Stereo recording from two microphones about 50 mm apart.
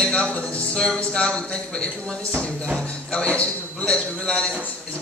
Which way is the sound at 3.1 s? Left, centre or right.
Left.